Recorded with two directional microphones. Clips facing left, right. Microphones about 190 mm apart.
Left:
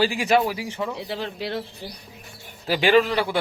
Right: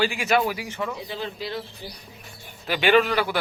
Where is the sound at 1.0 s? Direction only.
75° left (ahead or behind).